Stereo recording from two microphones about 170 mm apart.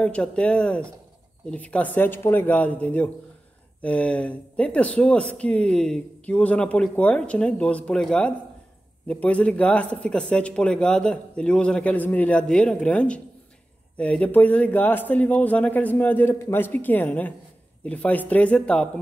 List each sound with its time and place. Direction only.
0.0 s a man's voice: 5° left (ahead or behind)